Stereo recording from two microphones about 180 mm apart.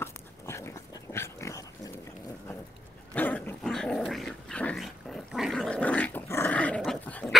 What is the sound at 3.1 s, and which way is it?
Dog, 10° left (ahead or behind).